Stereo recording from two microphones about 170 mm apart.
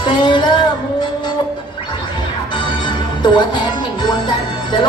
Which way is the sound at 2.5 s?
30° left (ahead or behind).